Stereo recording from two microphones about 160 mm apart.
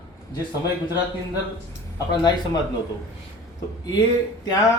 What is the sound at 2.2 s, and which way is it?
Speech, 25° left (ahead or behind).